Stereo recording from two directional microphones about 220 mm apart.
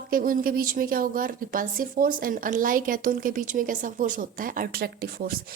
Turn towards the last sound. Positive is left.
turn(degrees=-45)  # may be behind; listen again after turning